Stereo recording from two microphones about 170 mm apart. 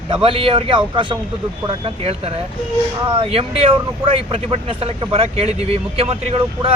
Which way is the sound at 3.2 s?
35° right (ahead or behind).